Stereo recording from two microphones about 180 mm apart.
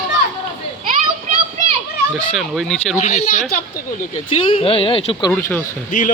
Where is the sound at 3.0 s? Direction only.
40° left (ahead or behind).